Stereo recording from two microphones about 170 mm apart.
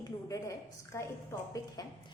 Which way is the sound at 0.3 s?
20° left (ahead or behind).